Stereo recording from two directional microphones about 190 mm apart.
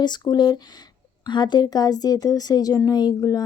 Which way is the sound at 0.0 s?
20° left (ahead or behind).